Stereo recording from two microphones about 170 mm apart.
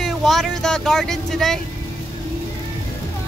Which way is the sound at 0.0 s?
Centre (ahead or behind).